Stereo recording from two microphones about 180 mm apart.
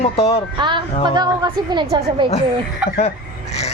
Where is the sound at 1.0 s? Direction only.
25° right (ahead or behind).